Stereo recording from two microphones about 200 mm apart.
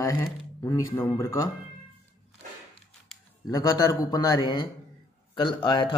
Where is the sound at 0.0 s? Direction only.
15° left (ahead or behind).